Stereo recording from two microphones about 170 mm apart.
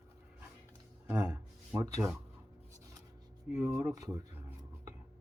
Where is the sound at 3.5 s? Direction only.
15° right (ahead or behind).